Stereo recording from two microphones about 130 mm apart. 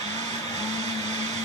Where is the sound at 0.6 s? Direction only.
60° right (ahead or behind).